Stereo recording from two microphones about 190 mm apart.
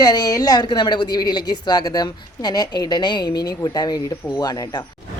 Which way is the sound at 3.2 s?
55° left (ahead or behind).